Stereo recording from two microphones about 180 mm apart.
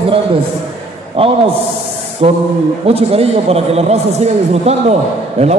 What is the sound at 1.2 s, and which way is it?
A man's voice, 30° right (ahead or behind).